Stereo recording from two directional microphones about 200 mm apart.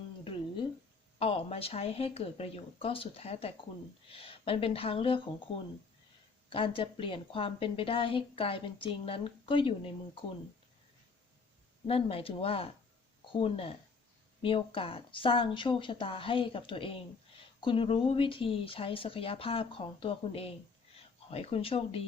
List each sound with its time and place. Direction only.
1.2 s a woman's voice: 30° left (ahead or behind)
6.5 s a woman's voice: 25° left (ahead or behind)
11.9 s a woman's voice: 30° left (ahead or behind)